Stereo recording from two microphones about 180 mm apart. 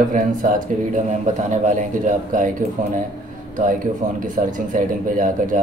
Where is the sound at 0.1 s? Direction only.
50° right (ahead or behind).